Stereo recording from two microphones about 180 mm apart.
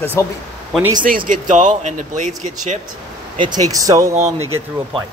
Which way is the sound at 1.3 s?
45° right (ahead or behind).